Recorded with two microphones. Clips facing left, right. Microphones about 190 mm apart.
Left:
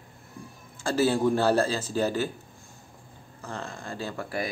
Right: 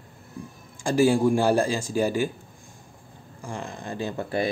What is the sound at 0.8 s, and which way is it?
Speech, 15° right (ahead or behind).